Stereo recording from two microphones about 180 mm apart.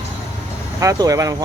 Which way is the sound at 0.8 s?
20° right (ahead or behind).